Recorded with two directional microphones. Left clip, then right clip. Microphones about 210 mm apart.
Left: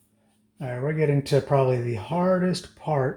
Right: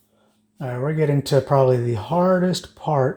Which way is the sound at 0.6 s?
35° right (ahead or behind).